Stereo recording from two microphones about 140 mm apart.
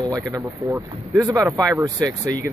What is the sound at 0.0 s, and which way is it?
Speech, 25° right (ahead or behind).